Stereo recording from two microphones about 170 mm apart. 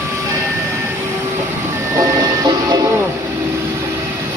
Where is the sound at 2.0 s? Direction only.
25° right (ahead or behind).